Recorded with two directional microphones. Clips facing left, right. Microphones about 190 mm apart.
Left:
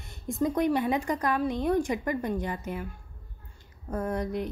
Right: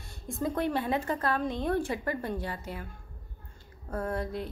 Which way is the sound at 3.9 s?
20° left (ahead or behind).